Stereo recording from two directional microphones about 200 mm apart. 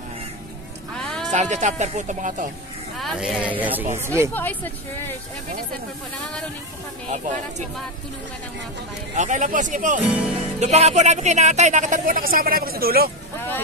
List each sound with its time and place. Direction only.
0.9 s music: 5° left (ahead or behind)
1.3 s speech: 35° right (ahead or behind)
3.0 s speech: centre (ahead or behind)
4.3 s speech: 10° left (ahead or behind)
7.1 s speech: 35° right (ahead or behind)
9.1 s speech: 40° right (ahead or behind)
10.0 s speech: 5° right (ahead or behind)
10.6 s speech: 35° right (ahead or behind); by 13.1 s 50° right (ahead or behind)